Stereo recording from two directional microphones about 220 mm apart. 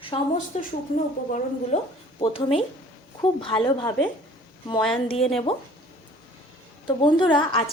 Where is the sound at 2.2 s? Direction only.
25° left (ahead or behind).